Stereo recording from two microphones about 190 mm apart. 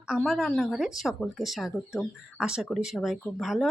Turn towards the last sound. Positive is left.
turn(degrees=0)  # may be behind; listen again after turning